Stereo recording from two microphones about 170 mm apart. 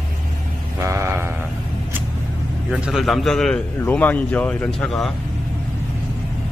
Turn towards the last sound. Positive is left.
turn(degrees=5)  # may be behind; listen again after turning